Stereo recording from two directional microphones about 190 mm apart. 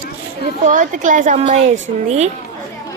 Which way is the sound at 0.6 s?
45° right (ahead or behind).